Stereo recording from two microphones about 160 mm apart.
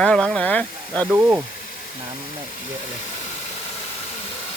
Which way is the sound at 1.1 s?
10° right (ahead or behind).